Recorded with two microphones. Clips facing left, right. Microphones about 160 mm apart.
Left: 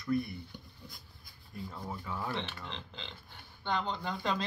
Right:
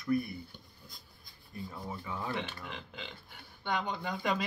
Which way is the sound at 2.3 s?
25° left (ahead or behind).